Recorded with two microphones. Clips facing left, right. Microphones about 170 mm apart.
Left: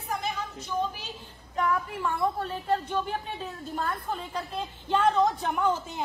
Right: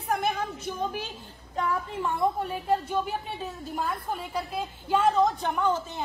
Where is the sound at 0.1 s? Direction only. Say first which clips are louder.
Right 5 dB; 55° right (ahead or behind).